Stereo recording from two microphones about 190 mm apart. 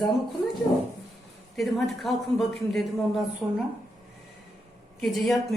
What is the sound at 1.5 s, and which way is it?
Speech, centre (ahead or behind).